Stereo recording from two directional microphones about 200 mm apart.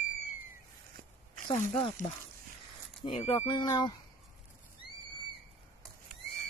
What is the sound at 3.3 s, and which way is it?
Speech, 20° left (ahead or behind).